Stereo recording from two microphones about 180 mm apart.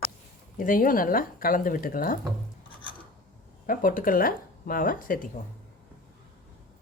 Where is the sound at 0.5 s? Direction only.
50° left (ahead or behind).